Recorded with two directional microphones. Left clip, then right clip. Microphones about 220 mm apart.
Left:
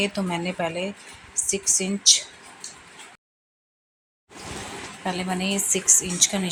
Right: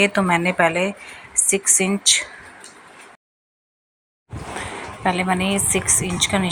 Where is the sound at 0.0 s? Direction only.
10° right (ahead or behind).